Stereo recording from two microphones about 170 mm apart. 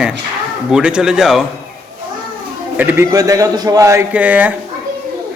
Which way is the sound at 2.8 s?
10° right (ahead or behind).